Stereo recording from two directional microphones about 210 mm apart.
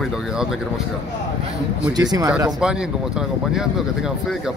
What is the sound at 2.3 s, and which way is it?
Speech, 15° right (ahead or behind).